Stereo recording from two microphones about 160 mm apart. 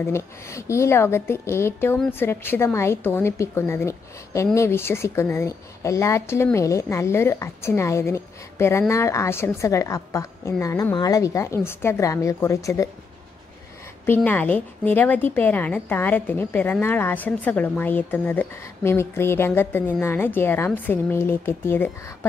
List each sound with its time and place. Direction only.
0.0 s a woman's voice: 20° left (ahead or behind)
14.0 s a woman's voice: 10° left (ahead or behind)